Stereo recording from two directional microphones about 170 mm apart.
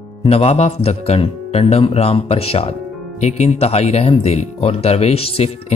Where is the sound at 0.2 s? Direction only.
35° left (ahead or behind).